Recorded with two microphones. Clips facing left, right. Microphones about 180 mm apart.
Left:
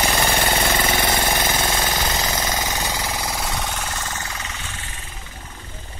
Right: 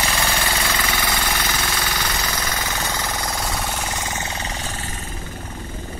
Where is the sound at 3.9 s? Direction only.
15° right (ahead or behind); by 5.2 s 40° right (ahead or behind).